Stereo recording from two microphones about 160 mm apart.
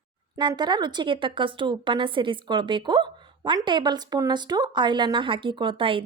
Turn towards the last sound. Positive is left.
turn(degrees=-35)  # may be behind; listen again after turning